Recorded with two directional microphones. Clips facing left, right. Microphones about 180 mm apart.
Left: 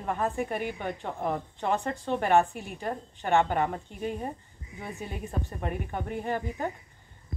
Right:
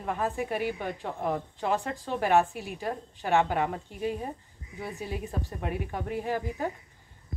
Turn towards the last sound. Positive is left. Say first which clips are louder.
# even
turn(degrees=-5)  # may be behind; listen again after turning